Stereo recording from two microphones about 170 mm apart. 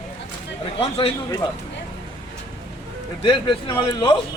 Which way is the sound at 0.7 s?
35° left (ahead or behind).